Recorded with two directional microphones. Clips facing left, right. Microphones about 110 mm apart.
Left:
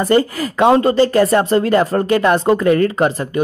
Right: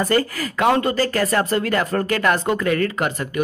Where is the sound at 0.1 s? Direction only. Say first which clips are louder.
Left 6 dB; 25° left (ahead or behind).